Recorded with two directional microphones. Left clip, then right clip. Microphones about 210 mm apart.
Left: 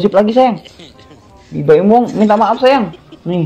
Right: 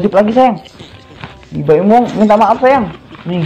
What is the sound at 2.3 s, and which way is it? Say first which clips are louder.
Speech: right 2 dB; 50° left (ahead or behind).